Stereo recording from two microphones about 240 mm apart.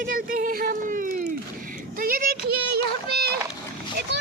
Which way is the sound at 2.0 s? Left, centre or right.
Right.